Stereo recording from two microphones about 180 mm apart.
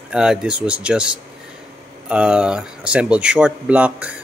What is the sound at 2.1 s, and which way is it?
Speech, 5° right (ahead or behind).